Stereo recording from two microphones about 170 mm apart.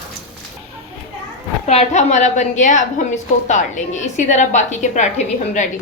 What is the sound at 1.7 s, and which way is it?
A woman's voice, 40° left (ahead or behind).